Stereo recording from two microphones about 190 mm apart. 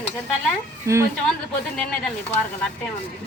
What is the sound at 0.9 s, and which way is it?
Speech, 15° right (ahead or behind).